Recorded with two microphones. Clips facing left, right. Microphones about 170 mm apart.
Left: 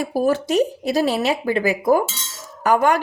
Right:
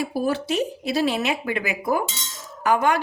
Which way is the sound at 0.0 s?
45° left (ahead or behind).